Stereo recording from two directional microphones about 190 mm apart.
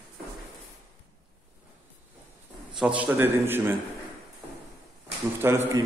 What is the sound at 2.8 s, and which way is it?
Speech, 5° right (ahead or behind).